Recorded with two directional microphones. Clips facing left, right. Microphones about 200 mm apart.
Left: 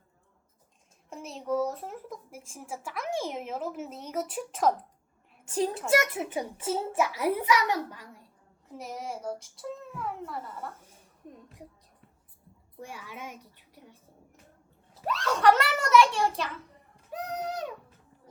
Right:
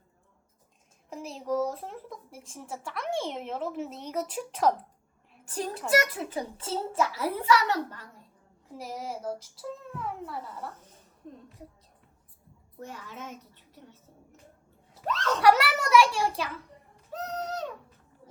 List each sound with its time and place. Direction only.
1.1 s a woman's voice: centre (ahead or behind)
5.9 s a child's voice: 25° left (ahead or behind)
8.7 s speech: centre (ahead or behind)
11.2 s a child's voice: 10° left (ahead or behind)
12.8 s a child's voice: 10° left (ahead or behind)
15.0 s a child's voice: 10° left (ahead or behind)
15.4 s a child's voice: 5° right (ahead or behind)
17.1 s music: 15° left (ahead or behind)